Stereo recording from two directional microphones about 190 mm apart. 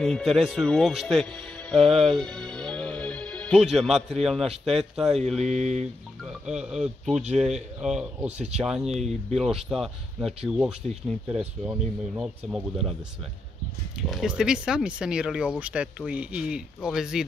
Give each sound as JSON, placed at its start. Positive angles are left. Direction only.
{"t": 0.0, "sound": "speech", "side_deg": 0}
{"t": 5.4, "sound": "a sound", "side_deg": -40}
{"t": 6.4, "sound": "speech", "side_deg": -5}
{"t": 7.2, "sound": "a sound", "side_deg": -35}
{"t": 7.8, "sound": "speech", "side_deg": -5}
{"t": 14.0, "sound": "speech", "side_deg": 0}